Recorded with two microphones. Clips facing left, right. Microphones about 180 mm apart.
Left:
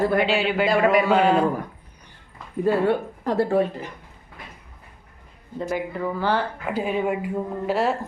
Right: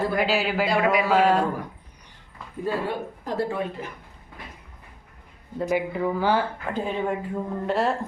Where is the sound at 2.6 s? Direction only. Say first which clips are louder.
Left 7 dB; 60° left (ahead or behind).